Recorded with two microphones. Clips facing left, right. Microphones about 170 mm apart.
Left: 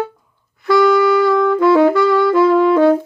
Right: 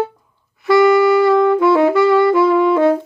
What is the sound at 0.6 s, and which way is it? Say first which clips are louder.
Saxophone: right 1 dB; 5° right (ahead or behind).